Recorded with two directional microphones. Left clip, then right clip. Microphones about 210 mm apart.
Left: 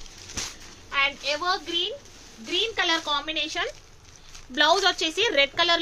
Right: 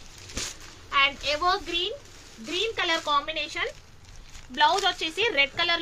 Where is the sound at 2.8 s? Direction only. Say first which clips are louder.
Right 3 dB; 30° left (ahead or behind).